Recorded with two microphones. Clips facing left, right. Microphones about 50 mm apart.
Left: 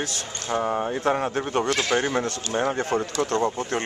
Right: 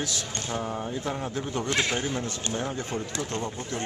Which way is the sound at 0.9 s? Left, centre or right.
Left.